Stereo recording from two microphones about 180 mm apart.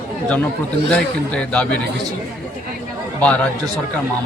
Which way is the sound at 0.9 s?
5° left (ahead or behind).